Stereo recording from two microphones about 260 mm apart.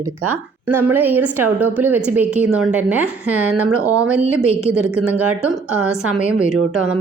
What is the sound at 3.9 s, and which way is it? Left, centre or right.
Speech, centre.